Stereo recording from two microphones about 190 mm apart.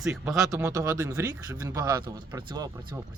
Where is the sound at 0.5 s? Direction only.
15° right (ahead or behind).